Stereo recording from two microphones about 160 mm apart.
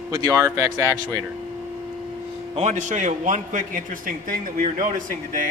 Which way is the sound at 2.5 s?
45° right (ahead or behind).